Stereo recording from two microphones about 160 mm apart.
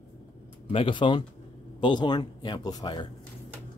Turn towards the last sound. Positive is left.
turn(degrees=30)  # may be behind; listen again after turning